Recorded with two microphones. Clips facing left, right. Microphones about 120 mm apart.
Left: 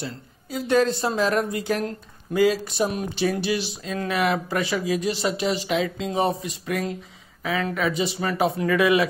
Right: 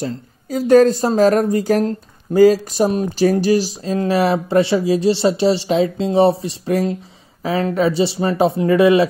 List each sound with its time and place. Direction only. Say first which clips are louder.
0.0 s a woman's voice: right 9 dB; 40° right (ahead or behind)